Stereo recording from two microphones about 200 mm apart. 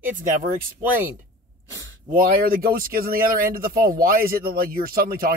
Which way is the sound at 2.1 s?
45° right (ahead or behind).